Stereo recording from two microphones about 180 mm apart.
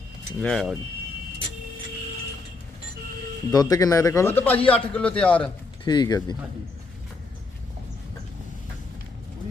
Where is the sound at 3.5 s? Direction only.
20° left (ahead or behind).